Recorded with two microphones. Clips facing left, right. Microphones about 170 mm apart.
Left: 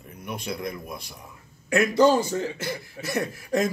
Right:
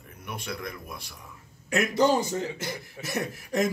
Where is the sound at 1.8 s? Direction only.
20° right (ahead or behind).